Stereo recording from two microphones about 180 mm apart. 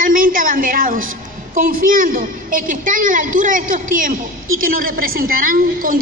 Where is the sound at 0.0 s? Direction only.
50° right (ahead or behind).